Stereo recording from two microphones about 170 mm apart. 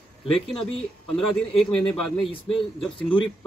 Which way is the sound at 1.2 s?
5° left (ahead or behind).